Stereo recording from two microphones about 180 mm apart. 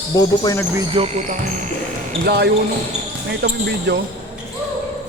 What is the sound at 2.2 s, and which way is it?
Speech, 65° right (ahead or behind).